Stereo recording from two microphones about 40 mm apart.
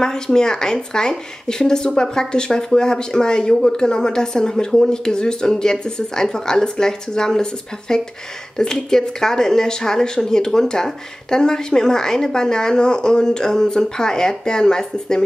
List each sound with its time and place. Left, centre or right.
0.0 s speech: centre